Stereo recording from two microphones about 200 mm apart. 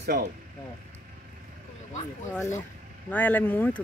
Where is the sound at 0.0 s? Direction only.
55° right (ahead or behind).